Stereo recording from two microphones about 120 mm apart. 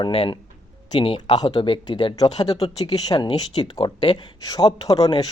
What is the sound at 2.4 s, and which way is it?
Speech, 30° left (ahead or behind).